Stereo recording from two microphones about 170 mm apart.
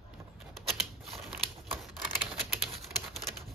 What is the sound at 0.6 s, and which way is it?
Typewriter, centre (ahead or behind).